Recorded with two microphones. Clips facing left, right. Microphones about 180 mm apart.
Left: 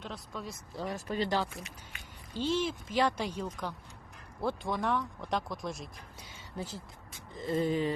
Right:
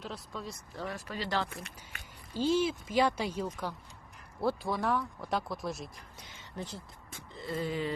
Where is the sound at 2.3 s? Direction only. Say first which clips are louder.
Right 3 dB; 10° right (ahead or behind).